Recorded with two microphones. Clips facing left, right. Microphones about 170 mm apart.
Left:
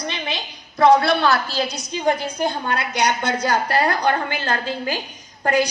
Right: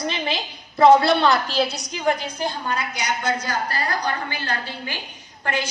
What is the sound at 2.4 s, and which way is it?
A woman's voice, 65° left (ahead or behind).